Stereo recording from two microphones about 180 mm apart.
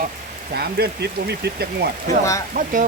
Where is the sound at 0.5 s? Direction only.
65° right (ahead or behind).